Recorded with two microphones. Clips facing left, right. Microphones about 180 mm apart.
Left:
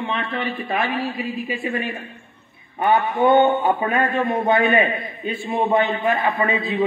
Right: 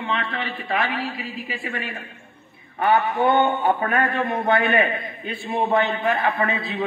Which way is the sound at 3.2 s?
15° left (ahead or behind).